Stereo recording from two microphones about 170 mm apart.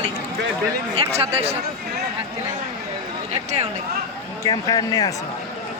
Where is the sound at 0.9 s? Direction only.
35° right (ahead or behind).